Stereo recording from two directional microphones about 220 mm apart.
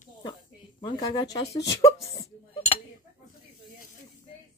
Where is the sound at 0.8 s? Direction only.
20° left (ahead or behind).